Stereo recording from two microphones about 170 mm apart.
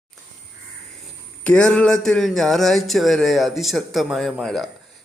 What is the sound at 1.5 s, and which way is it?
Speech, 5° left (ahead or behind).